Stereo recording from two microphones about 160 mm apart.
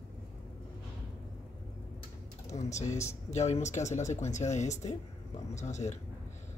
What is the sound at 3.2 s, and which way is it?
Speech, 45° left (ahead or behind).